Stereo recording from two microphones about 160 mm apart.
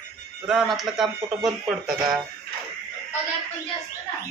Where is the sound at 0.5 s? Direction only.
Centre (ahead or behind).